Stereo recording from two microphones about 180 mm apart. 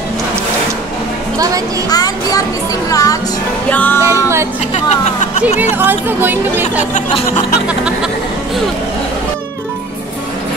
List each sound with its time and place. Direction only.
1.9 s speech: 20° left (ahead or behind)
3.7 s music: 10° left (ahead or behind)
4.0 s speech: 15° right (ahead or behind)
4.7 s music: 40° left (ahead or behind)
5.6 s speech: 10° right (ahead or behind)
6.6 s music: 40° left (ahead or behind)
7.6 s music: 5° right (ahead or behind)